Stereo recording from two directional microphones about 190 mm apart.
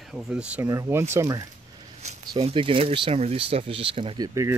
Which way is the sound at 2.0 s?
35° right (ahead or behind).